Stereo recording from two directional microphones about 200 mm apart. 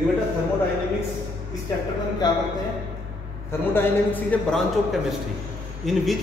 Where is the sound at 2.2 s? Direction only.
20° left (ahead or behind).